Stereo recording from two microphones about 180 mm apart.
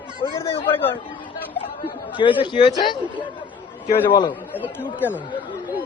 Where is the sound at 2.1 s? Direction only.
25° left (ahead or behind).